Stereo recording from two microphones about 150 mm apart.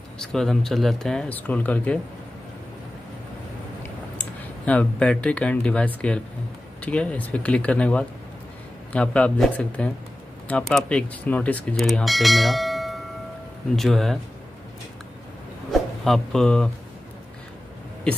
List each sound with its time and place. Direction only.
0.2 s speech: 5° left (ahead or behind)
4.6 s speech: 10° left (ahead or behind)
15.7 s speech: centre (ahead or behind)